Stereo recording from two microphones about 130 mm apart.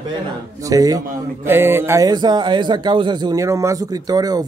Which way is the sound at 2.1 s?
35° right (ahead or behind).